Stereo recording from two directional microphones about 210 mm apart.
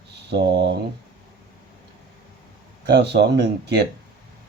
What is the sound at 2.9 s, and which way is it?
Speech, 55° right (ahead or behind).